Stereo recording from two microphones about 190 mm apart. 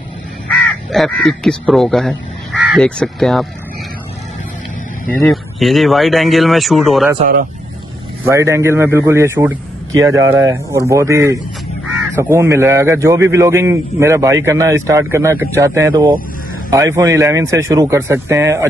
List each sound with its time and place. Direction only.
0.5 s speech: 5° left (ahead or behind)
5.3 s speech: centre (ahead or behind)
7.2 s speech: 50° right (ahead or behind)
8.3 s a man's voice: 15° right (ahead or behind)